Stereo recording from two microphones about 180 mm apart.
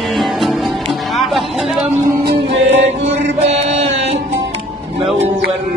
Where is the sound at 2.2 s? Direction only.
70° right (ahead or behind).